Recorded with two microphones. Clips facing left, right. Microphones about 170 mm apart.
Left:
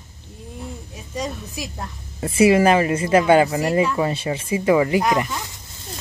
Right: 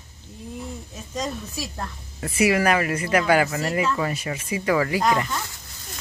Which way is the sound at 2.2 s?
30° left (ahead or behind).